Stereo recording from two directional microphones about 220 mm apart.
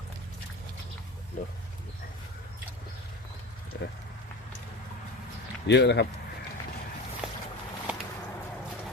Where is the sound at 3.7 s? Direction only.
50° left (ahead or behind).